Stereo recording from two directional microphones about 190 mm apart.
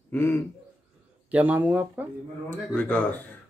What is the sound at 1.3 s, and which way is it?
Speech, 5° right (ahead or behind).